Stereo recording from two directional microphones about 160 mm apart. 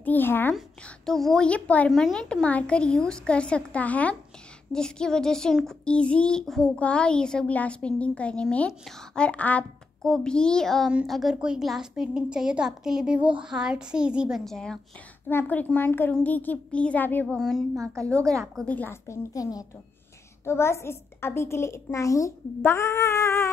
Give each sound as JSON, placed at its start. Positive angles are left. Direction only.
{"t": 0.0, "sound": "a woman's voice", "side_deg": 10}